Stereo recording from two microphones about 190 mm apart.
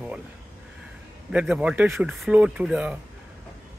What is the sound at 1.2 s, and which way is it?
Speech, 5° right (ahead or behind).